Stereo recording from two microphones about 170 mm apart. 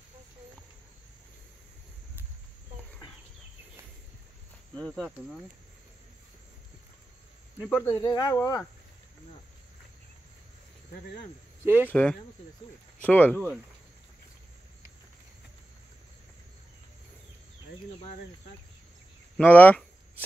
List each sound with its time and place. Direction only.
4.8 s speech: centre (ahead or behind)
7.7 s speech: 20° left (ahead or behind)
11.6 s speech: 10° right (ahead or behind)
11.9 s speech: 10° left (ahead or behind)
19.3 s a sound: 10° left (ahead or behind)